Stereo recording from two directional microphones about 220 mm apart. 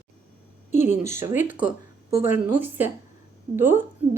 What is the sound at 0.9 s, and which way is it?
Speech, 30° left (ahead or behind).